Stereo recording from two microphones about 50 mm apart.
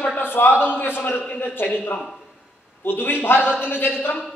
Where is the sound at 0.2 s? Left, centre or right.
Left.